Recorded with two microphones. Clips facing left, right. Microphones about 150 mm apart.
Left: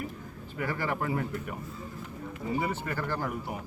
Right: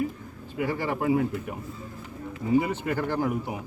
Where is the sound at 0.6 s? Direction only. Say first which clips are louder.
Right 4 dB; 15° right (ahead or behind).